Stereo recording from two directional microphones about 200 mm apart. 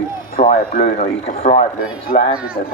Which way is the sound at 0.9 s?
35° left (ahead or behind).